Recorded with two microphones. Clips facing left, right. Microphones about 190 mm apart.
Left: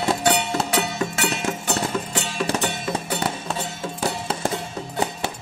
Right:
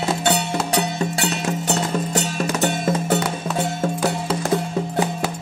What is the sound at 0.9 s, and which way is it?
Music, 35° right (ahead or behind).